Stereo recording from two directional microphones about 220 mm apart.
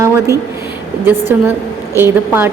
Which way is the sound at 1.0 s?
10° right (ahead or behind).